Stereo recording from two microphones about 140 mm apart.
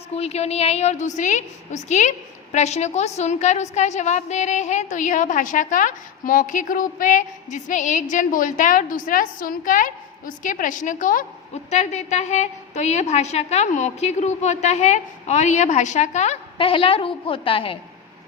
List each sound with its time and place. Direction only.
0.1 s a woman's voice: 50° left (ahead or behind); by 11.3 s 70° left (ahead or behind)
11.5 s a woman's voice: 50° left (ahead or behind)
16.6 s a woman's voice: 40° left (ahead or behind)